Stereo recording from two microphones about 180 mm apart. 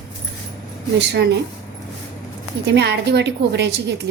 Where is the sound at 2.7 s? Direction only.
70° right (ahead or behind).